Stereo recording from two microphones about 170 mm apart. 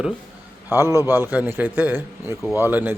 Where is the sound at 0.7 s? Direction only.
15° right (ahead or behind).